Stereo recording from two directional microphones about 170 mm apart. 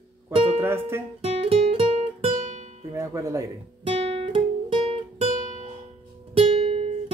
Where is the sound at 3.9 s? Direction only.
35° right (ahead or behind).